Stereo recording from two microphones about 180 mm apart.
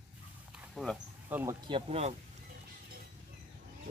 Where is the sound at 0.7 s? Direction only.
Centre (ahead or behind).